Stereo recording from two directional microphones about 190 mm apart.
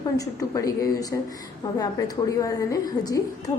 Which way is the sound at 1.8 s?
20° left (ahead or behind).